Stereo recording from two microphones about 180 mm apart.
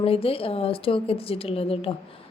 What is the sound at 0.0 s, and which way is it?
A woman's voice, 30° left (ahead or behind).